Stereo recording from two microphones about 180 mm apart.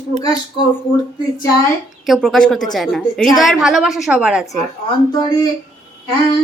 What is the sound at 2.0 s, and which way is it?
Speech, centre (ahead or behind).